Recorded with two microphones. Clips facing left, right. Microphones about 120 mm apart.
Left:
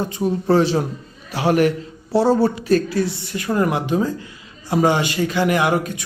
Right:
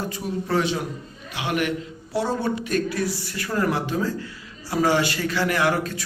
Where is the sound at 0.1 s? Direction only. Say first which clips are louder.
Left 8 dB; 30° left (ahead or behind).